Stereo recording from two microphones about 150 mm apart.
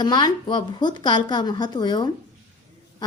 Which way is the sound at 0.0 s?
25° left (ahead or behind).